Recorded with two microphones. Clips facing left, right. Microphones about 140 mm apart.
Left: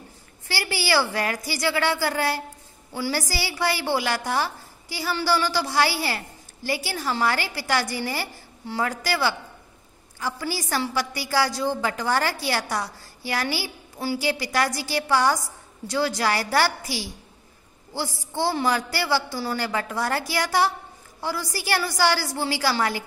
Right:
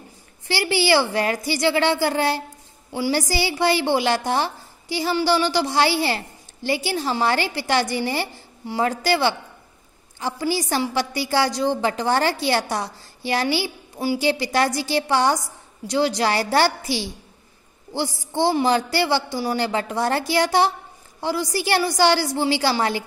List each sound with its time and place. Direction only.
0.5 s a woman's voice: 20° right (ahead or behind)